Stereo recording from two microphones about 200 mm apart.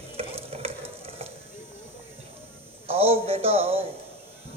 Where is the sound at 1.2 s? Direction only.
30° right (ahead or behind).